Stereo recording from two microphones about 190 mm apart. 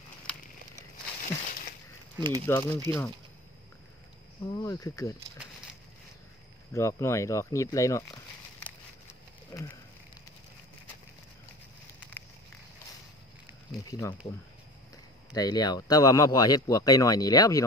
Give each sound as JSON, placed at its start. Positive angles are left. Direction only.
{"t": 2.1, "sound": "speech", "side_deg": -20}
{"t": 2.4, "sound": "speech", "side_deg": 10}
{"t": 4.5, "sound": "speech", "side_deg": 20}
{"t": 6.7, "sound": "speech", "side_deg": 15}
{"t": 9.5, "sound": "a sound", "side_deg": 15}
{"t": 13.7, "sound": "a sound", "side_deg": 15}
{"t": 15.3, "sound": "speech", "side_deg": 20}